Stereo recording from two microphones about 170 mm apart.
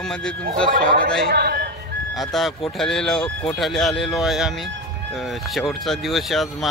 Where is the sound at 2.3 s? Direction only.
Centre (ahead or behind).